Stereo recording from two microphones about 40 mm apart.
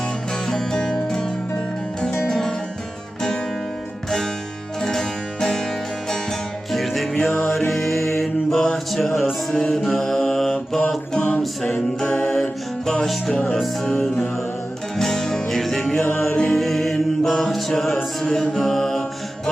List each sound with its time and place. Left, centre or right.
0.4 s music: centre
4.8 s music: centre
6.7 s music: centre
9.5 s mantra: centre
11.1 s music: left
12.1 s music: centre
13.3 s music: left
14.9 s music: centre
15.9 s music: centre
16.5 s music: centre